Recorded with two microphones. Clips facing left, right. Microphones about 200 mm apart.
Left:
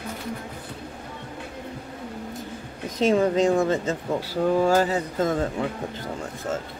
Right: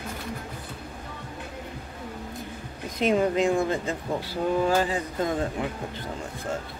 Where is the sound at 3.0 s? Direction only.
40° left (ahead or behind).